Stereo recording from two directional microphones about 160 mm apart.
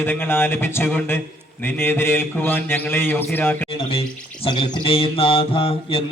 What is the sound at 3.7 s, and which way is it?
Mantra, 35° left (ahead or behind).